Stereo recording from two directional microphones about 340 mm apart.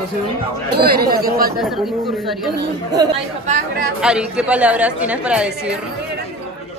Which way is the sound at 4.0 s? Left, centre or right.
Centre.